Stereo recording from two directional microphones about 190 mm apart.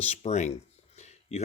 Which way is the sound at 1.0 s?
35° left (ahead or behind).